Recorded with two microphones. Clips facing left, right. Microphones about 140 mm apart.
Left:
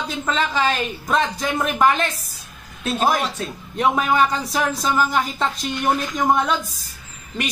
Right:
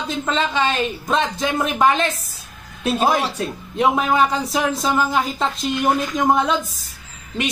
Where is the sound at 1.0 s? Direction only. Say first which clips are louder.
Left 1 dB; 25° right (ahead or behind).